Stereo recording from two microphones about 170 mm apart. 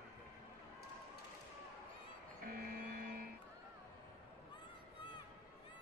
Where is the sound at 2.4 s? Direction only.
60° right (ahead or behind).